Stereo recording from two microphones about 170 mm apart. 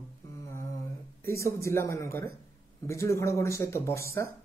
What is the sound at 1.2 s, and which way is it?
A man's voice, 15° left (ahead or behind).